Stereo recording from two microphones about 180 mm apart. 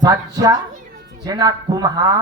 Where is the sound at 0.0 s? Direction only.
20° right (ahead or behind).